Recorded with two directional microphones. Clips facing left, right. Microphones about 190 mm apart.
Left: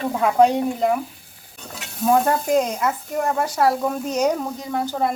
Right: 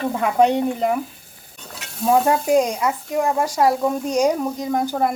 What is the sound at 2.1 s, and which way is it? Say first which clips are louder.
Speech: right 1 dB; 5° right (ahead or behind).